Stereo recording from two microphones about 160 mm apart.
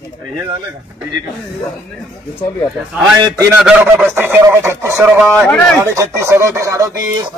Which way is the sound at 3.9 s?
10° right (ahead or behind).